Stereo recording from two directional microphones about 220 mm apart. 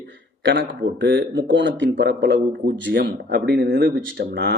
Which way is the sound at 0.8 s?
55° right (ahead or behind).